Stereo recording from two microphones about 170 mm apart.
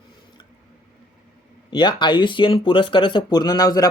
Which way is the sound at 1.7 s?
25° left (ahead or behind).